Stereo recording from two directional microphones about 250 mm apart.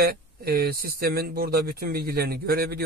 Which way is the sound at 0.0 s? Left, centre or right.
Right.